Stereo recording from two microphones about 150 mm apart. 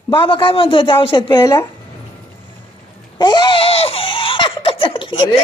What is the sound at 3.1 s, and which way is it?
Laughter, 30° left (ahead or behind).